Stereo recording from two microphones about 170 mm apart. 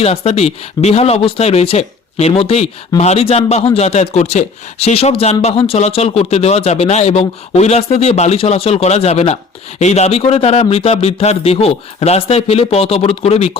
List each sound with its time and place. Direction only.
0.0 s speech: 35° left (ahead or behind)